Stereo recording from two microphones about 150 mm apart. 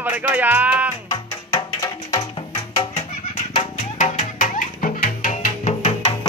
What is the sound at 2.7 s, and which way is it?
Music, 45° left (ahead or behind).